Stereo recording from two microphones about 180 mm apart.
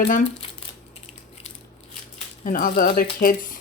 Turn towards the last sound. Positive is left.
turn(degrees=50)  # may be behind; listen again after turning